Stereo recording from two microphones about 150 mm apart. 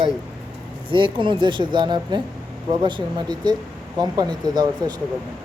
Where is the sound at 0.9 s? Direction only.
35° right (ahead or behind).